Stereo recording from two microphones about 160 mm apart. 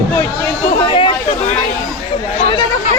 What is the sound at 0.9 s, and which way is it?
Chatter, 35° left (ahead or behind).